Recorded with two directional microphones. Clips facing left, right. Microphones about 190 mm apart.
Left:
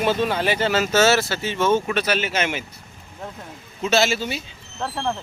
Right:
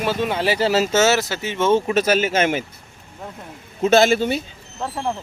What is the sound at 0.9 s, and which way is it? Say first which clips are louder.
Speech: even; 20° right (ahead or behind).